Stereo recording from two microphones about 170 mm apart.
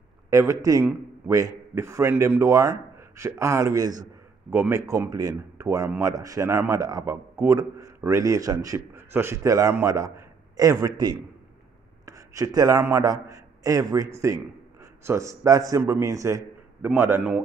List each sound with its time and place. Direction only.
0.3 s a man's voice: 20° right (ahead or behind)